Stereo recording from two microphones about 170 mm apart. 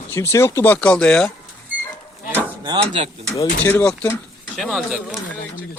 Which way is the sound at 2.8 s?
30° right (ahead or behind).